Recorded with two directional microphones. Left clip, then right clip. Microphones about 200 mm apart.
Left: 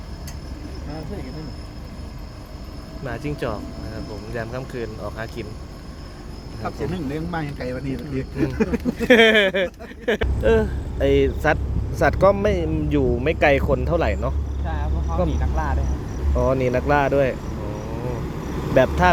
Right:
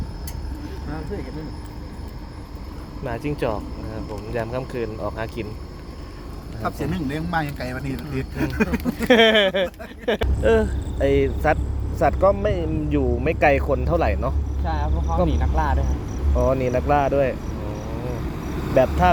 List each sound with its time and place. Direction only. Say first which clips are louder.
3.0 s speech: right 2 dB; 15° right (ahead or behind)
6.7 s speech: right 1 dB; 55° right (ahead or behind); by 9.0 s 40° right (ahead or behind)
9.0 s speech: left 1 dB; centre (ahead or behind)
14.6 s vehicle: right 4 dB; 50° right (ahead or behind)
15.3 s speech: right 3 dB; 45° right (ahead or behind)
16.3 s speech: even; 10° left (ahead or behind)
17.7 s cricket: left 2 dB; 5° right (ahead or behind)
18.4 s vehicle: left 1 dB; 15° right (ahead or behind)
19.0 s speech: even; 15° left (ahead or behind)